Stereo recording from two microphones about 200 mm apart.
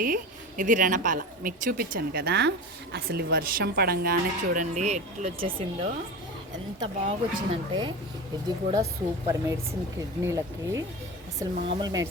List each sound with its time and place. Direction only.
0.0 s a woman's voice: 45° right (ahead or behind); by 7.9 s 25° right (ahead or behind)
9.2 s speech: 15° right (ahead or behind)